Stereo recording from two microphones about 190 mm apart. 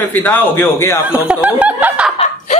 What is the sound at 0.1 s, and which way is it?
Speech, 10° left (ahead or behind).